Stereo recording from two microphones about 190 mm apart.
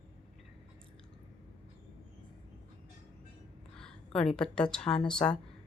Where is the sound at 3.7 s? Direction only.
5° left (ahead or behind).